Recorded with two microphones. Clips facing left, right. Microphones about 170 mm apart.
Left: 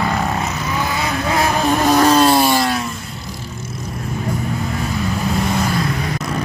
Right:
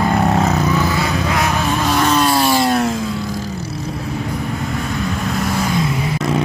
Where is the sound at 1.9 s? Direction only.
35° left (ahead or behind).